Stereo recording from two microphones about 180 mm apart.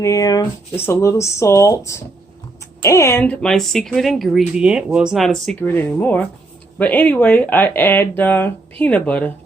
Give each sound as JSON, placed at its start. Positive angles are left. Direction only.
{"t": 0.0, "sound": "speech", "side_deg": 20}